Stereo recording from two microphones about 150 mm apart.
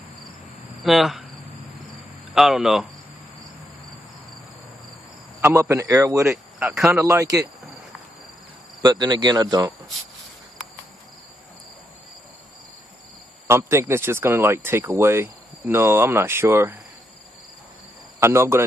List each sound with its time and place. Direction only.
0.8 s speech: centre (ahead or behind)
2.3 s speech: centre (ahead or behind)
5.4 s speech: 15° right (ahead or behind)
6.3 s speech: 5° right (ahead or behind)
6.9 s speech: 20° right (ahead or behind)
8.8 s speech: 30° right (ahead or behind)
13.5 s speech: 15° right (ahead or behind)
18.2 s speech: 15° right (ahead or behind)